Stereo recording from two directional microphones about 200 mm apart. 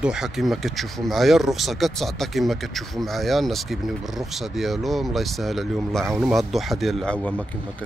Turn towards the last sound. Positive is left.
turn(degrees=5)  # may be behind; listen again after turning